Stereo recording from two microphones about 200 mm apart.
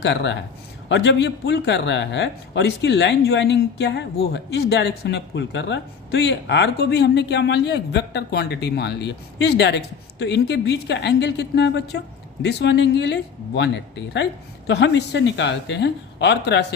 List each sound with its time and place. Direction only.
0.0 s speech: 60° left (ahead or behind)